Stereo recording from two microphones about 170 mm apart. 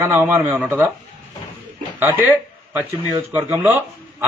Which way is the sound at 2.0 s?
10° right (ahead or behind).